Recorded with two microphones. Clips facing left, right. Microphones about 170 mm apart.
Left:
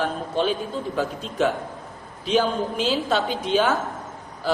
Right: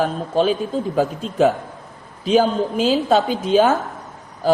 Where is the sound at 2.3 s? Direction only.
45° right (ahead or behind).